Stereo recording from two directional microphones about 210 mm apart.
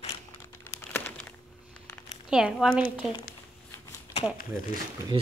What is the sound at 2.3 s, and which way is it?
Speech, 5° right (ahead or behind).